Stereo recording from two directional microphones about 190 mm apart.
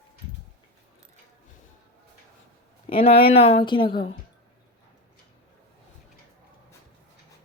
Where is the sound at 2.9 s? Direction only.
30° left (ahead or behind).